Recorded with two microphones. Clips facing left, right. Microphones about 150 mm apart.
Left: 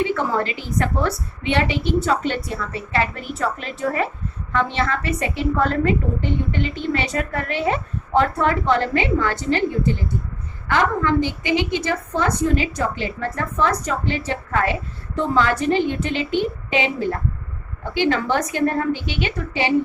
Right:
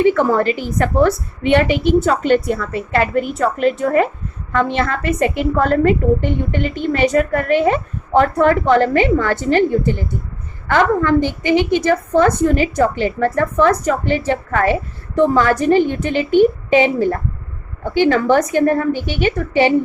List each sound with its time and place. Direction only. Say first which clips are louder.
0.1 s a woman's voice: right 7 dB; 55° right (ahead or behind)